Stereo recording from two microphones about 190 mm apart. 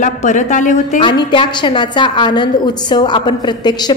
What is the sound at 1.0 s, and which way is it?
A woman's voice, 25° left (ahead or behind).